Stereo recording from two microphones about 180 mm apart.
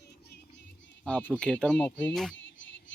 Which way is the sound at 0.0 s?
65° left (ahead or behind).